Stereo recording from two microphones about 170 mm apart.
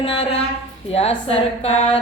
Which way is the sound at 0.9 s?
35° left (ahead or behind).